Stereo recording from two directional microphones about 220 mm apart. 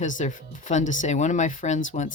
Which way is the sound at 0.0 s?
35° left (ahead or behind).